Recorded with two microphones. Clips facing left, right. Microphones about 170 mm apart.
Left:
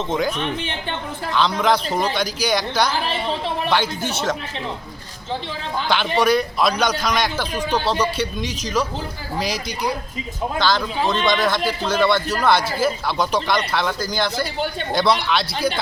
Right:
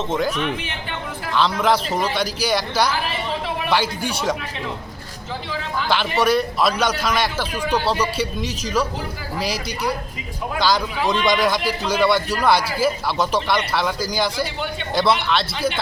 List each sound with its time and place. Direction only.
0.1 s a man's voice: 5° right (ahead or behind)
0.3 s speech: 30° left (ahead or behind)
1.3 s a man's voice: 5° right (ahead or behind)
2.9 s a sound: 30° left (ahead or behind)
3.7 s a man's voice: 10° right (ahead or behind)
6.1 s a man's voice: 5° right (ahead or behind)
10.6 s a man's voice: 10° right (ahead or behind)